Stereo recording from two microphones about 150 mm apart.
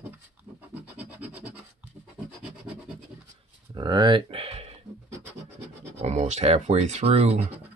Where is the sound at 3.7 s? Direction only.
30° right (ahead or behind).